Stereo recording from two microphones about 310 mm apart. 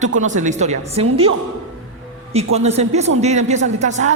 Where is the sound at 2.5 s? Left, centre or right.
Right.